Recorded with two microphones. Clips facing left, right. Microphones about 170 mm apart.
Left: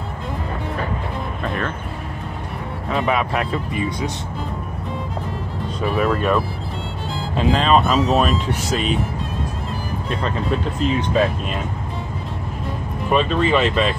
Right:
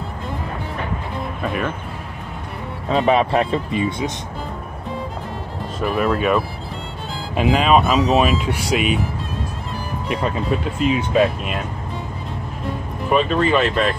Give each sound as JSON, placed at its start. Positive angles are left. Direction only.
{"t": 1.4, "sound": "speech", "side_deg": -10}
{"t": 2.9, "sound": "speech", "side_deg": -30}
{"t": 5.8, "sound": "speech", "side_deg": 0}
{"t": 10.5, "sound": "speech", "side_deg": -5}
{"t": 13.1, "sound": "speech", "side_deg": 0}